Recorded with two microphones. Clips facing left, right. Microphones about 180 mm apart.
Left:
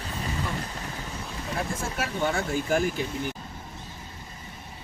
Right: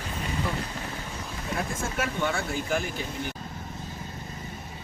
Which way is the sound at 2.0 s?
40° left (ahead or behind).